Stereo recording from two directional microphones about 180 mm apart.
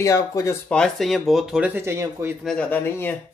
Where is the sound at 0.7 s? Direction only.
Centre (ahead or behind); by 2.4 s 15° right (ahead or behind).